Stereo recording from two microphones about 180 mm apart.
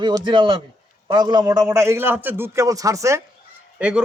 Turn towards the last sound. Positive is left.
turn(degrees=-5)  # may be behind; listen again after turning